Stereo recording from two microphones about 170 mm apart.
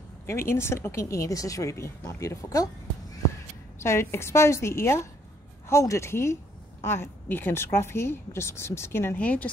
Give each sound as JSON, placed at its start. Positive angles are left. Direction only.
{"t": 0.3, "sound": "a woman's voice", "side_deg": 15}
{"t": 3.8, "sound": "a woman's voice", "side_deg": 15}